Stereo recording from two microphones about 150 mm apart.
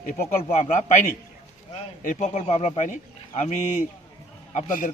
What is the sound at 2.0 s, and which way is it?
A man's voice, 50° left (ahead or behind).